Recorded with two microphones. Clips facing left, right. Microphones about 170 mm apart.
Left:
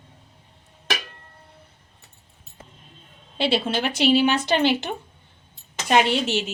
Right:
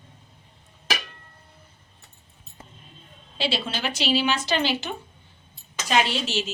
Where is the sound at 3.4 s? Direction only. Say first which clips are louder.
Left 5 dB; 55° left (ahead or behind).